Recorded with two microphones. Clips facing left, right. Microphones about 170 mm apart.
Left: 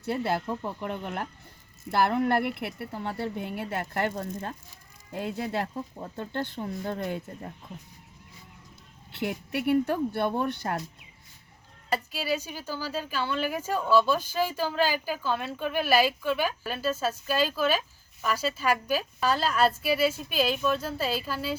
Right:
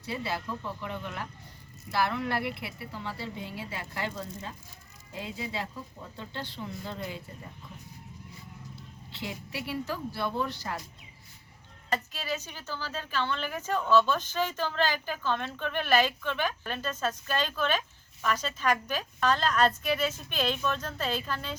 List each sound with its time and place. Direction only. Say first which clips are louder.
0.1 s a woman's voice: left 6 dB; 55° left (ahead or behind)
9.1 s a woman's voice: left 7 dB; 60° left (ahead or behind)
11.9 s speech: left 4 dB; 10° left (ahead or behind)